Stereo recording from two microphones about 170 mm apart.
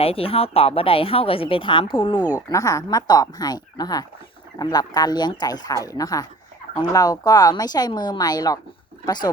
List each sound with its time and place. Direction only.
0.0 s a woman's voice: 35° left (ahead or behind)